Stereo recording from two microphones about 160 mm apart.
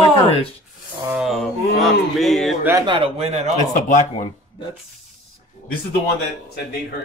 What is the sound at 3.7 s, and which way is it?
Speech, 55° left (ahead or behind).